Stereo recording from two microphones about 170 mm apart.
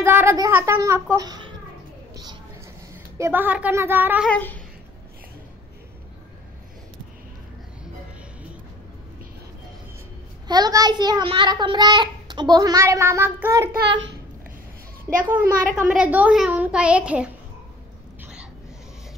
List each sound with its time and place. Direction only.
0.0 s a woman's voice: 15° right (ahead or behind)
3.2 s a woman's voice: 10° right (ahead or behind)
4.3 s a sound: 10° left (ahead or behind)
10.5 s a child's voice: 25° right (ahead or behind)
13.7 s a child's voice: 90° right
15.2 s a woman's voice: 10° right (ahead or behind)